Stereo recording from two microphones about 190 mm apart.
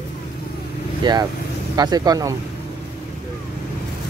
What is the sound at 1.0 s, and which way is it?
Speech, 25° right (ahead or behind).